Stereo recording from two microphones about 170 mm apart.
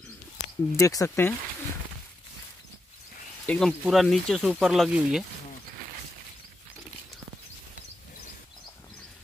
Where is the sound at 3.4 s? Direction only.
10° left (ahead or behind).